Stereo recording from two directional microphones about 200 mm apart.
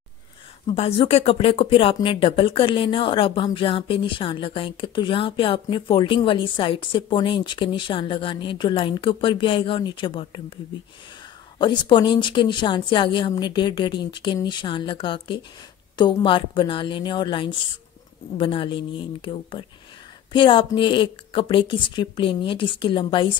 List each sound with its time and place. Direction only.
0.7 s speech: 30° left (ahead or behind)
11.5 s speech: 25° left (ahead or behind)